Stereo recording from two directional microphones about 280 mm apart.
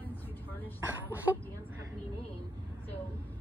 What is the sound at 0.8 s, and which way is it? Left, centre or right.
Speech, centre.